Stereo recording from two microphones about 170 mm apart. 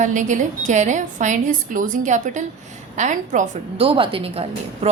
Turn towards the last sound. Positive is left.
turn(degrees=-35)  # may be behind; listen again after turning